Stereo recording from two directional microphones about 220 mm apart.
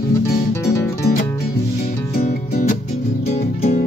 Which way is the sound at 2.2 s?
45° left (ahead or behind).